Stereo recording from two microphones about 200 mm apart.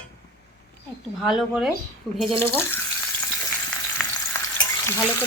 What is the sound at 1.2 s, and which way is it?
Speech, centre (ahead or behind).